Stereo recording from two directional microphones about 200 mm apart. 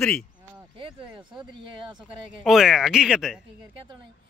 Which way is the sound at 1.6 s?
25° right (ahead or behind).